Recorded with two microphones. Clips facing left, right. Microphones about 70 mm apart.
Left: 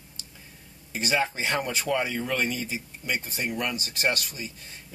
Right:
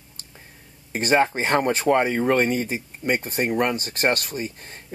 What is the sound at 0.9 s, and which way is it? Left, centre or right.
Speech, right.